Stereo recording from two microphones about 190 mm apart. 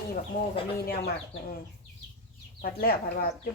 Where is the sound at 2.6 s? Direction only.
50° left (ahead or behind).